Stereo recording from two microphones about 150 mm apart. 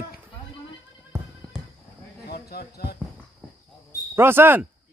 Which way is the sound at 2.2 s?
90° left.